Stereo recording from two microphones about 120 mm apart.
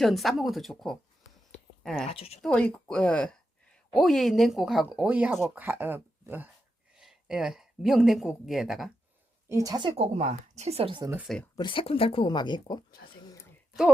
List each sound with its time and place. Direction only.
0.0 s a woman's voice: centre (ahead or behind)
1.5 s a sound: 5° left (ahead or behind)
2.0 s speech: 55° left (ahead or behind)
2.4 s a woman's voice: 10° left (ahead or behind); by 6.5 s 15° right (ahead or behind)
6.9 s speech: 5° right (ahead or behind)
9.5 s a woman's voice: 30° right (ahead or behind)
9.9 s speech: 70° right (ahead or behind); by 11.0 s 50° right (ahead or behind)
11.5 s speech: 45° left (ahead or behind)